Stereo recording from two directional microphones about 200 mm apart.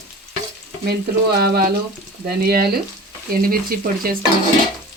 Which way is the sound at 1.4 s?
50° right (ahead or behind).